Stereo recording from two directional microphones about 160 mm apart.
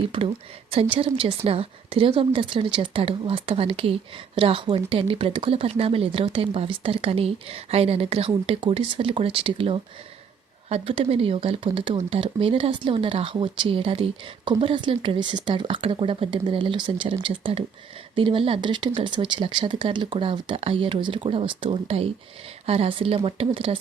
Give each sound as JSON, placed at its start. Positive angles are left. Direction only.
{"t": 0.1, "sound": "speech", "side_deg": -30}